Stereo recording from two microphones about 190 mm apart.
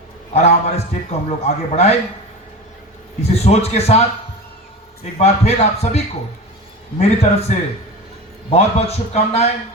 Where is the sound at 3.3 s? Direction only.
35° left (ahead or behind).